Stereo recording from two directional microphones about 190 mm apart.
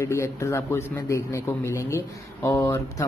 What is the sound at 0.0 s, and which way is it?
A man's voice, 15° left (ahead or behind).